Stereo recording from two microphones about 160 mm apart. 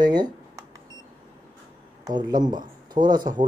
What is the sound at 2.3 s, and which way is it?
Speech, 25° right (ahead or behind).